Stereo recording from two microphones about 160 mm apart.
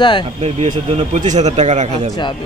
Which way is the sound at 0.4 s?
45° right (ahead or behind).